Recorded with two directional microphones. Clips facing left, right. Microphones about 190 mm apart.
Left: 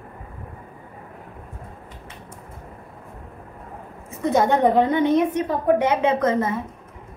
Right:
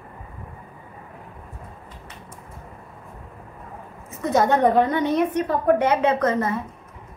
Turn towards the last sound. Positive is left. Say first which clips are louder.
# left 1 dB
turn(degrees=20)  # may be behind; listen again after turning